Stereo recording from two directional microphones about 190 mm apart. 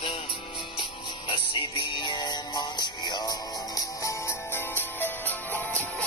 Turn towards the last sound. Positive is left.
turn(degrees=5)  # may be behind; listen again after turning